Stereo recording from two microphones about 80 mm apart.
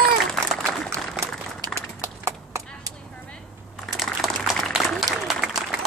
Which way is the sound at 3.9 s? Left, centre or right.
Centre.